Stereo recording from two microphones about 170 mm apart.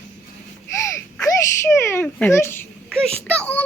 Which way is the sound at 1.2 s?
15° left (ahead or behind).